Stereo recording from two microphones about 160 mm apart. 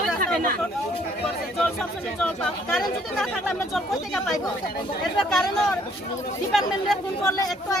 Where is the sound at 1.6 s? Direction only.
Centre (ahead or behind).